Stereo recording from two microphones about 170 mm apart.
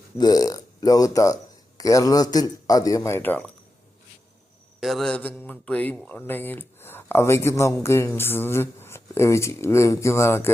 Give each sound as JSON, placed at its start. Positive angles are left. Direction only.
{"t": 0.2, "sound": "a man's voice", "side_deg": 20}
{"t": 4.8, "sound": "speech", "side_deg": 0}